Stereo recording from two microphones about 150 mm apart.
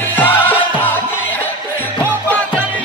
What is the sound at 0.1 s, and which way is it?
Music, 15° left (ahead or behind).